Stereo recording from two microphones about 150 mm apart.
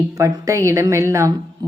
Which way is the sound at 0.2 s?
20° right (ahead or behind).